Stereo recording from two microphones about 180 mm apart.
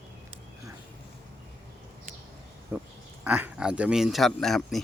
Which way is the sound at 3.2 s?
5° right (ahead or behind).